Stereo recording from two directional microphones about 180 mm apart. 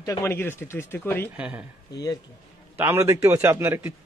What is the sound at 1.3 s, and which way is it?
Speech, 5° right (ahead or behind).